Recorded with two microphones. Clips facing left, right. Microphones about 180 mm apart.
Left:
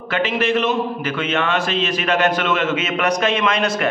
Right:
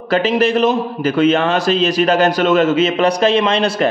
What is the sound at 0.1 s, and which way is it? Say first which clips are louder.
A man's voice: right 5 dB; 35° right (ahead or behind).